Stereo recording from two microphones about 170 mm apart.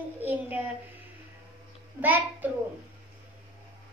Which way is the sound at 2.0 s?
10° right (ahead or behind).